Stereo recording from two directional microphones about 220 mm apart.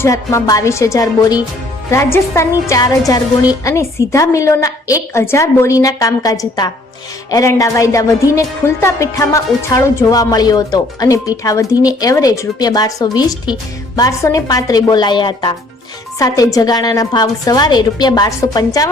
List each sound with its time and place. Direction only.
0.0 s a woman's voice: 15° left (ahead or behind)